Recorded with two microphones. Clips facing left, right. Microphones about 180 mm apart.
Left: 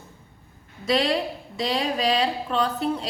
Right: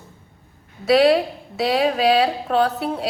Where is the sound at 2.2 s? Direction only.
65° right (ahead or behind).